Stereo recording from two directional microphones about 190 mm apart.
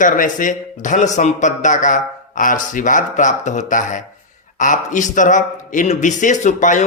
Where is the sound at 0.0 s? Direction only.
45° left (ahead or behind).